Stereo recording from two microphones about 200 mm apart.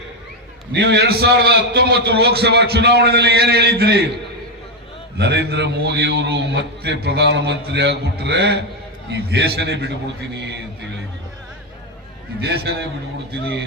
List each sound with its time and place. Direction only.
0.7 s a man's voice: 60° right (ahead or behind)
5.1 s a man's voice: 55° right (ahead or behind)
12.4 s a man's voice: 55° right (ahead or behind)